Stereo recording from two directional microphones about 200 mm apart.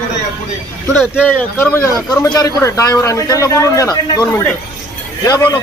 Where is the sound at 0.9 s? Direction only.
5° right (ahead or behind).